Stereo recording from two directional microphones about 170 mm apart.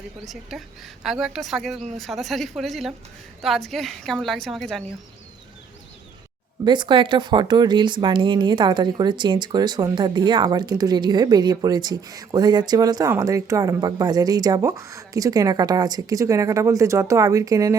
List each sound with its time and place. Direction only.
0.5 s a woman's voice: centre (ahead or behind)
6.7 s speech: 25° right (ahead or behind)